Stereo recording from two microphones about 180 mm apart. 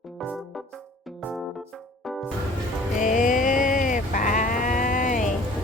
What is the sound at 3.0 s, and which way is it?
Sheep, 50° left (ahead or behind).